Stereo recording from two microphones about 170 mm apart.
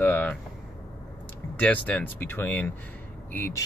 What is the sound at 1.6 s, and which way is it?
Speech, 10° left (ahead or behind).